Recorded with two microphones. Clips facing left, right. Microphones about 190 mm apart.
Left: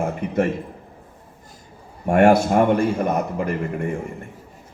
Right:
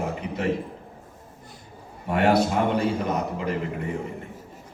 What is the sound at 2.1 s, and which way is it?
A man's voice, 50° left (ahead or behind).